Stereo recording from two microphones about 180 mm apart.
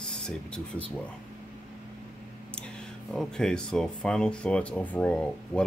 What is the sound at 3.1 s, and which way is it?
Speech, 5° left (ahead or behind).